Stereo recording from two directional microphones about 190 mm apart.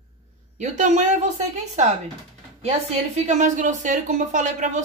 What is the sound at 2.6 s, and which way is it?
A woman's voice, 35° right (ahead or behind).